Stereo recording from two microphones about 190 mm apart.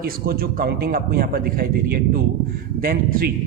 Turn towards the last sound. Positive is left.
turn(degrees=-50)  # may be behind; listen again after turning